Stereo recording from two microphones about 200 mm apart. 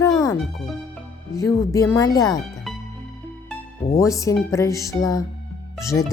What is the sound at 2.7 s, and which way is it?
Music, centre (ahead or behind).